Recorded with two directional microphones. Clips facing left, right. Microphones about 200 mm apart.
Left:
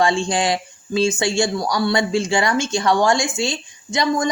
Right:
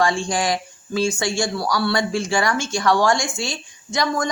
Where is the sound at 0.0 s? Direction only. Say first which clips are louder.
Left 2 dB; 25° left (ahead or behind).